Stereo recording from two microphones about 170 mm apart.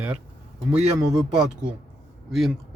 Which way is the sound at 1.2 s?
5° right (ahead or behind).